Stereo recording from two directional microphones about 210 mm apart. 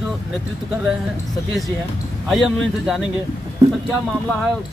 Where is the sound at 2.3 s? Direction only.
Centre (ahead or behind).